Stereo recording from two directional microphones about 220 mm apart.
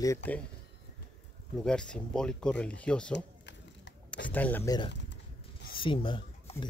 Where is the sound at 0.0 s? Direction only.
10° left (ahead or behind).